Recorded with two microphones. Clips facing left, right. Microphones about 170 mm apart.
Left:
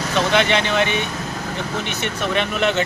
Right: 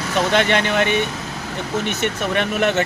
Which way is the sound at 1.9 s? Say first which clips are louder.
Right 2 dB; 50° right (ahead or behind).